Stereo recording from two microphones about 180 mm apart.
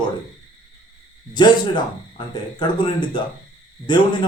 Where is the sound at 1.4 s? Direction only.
25° left (ahead or behind).